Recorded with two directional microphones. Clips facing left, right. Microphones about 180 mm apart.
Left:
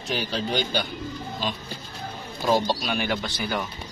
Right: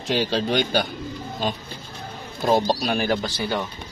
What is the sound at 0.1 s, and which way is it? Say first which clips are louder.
Speech: right 5 dB; 75° right (ahead or behind).